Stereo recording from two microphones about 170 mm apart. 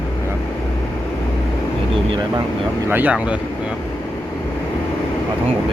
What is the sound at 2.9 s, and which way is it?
Speech, 10° right (ahead or behind).